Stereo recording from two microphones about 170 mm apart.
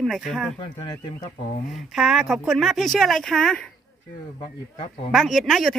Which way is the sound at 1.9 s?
Centre (ahead or behind).